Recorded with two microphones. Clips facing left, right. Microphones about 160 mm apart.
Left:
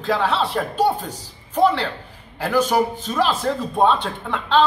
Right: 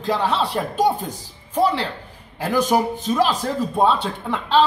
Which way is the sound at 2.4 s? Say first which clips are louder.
Even; 15° right (ahead or behind).